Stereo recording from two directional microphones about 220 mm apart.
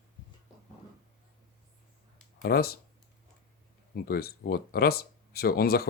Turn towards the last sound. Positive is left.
turn(degrees=45)  # may be behind; listen again after turning